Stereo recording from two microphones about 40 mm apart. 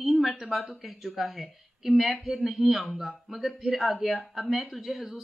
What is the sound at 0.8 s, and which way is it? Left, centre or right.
Speech, centre.